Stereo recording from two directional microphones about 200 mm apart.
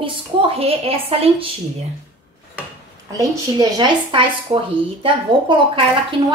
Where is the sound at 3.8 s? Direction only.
25° right (ahead or behind).